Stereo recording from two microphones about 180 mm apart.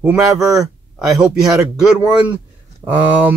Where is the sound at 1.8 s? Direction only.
5° right (ahead or behind).